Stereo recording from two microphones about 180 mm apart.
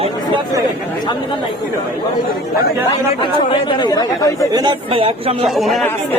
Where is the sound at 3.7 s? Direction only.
25° left (ahead or behind).